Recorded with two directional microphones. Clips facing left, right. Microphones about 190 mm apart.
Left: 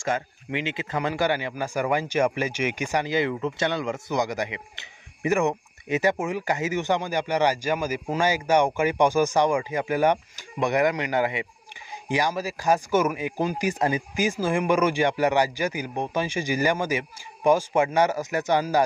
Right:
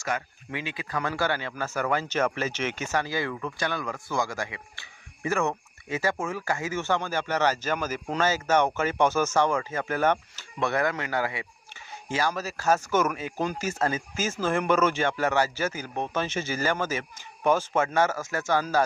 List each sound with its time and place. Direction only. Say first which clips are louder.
0.0 s speech: left 4 dB; 25° left (ahead or behind)